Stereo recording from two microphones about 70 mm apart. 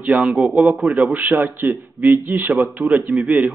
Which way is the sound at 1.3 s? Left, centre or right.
Right.